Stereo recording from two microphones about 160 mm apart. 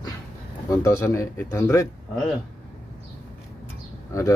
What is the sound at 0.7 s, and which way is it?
A man's voice, 20° left (ahead or behind).